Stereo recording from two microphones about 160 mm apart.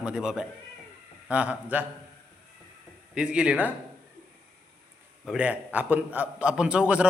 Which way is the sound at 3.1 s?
5° right (ahead or behind).